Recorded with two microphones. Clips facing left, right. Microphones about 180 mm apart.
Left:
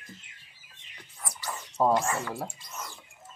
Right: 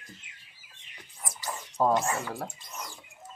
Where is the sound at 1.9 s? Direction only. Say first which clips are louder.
Even; 15° right (ahead or behind).